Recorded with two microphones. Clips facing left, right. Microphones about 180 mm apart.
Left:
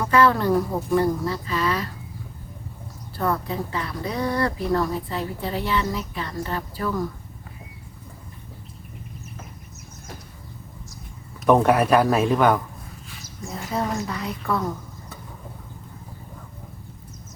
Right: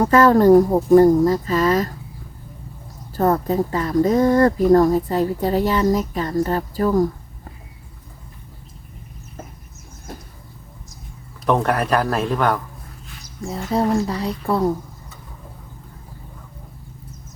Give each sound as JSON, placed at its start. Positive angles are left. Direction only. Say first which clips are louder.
{"t": 0.0, "sound": "speech", "louder": "right 6 dB", "side_deg": -45}
{"t": 3.2, "sound": "speech", "louder": "right 7 dB", "side_deg": -45}
{"t": 11.4, "sound": "a man's voice", "louder": "left 2 dB", "side_deg": 5}
{"t": 13.4, "sound": "a woman's voice", "louder": "right 6 dB", "side_deg": -30}